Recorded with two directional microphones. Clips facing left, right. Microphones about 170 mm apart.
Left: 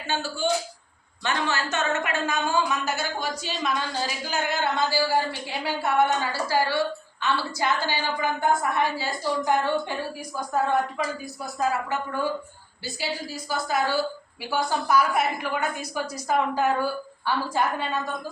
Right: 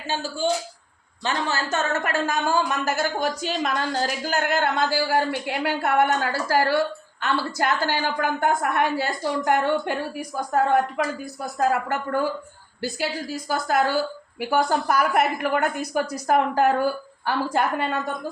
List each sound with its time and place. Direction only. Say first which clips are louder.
1.2 s a woman's voice: right 1 dB; 35° right (ahead or behind); by 11.0 s 65° right (ahead or behind)
11.7 s a woman's voice: right 4 dB; 55° right (ahead or behind)
13.5 s a woman's voice: right 3 dB; 55° right (ahead or behind)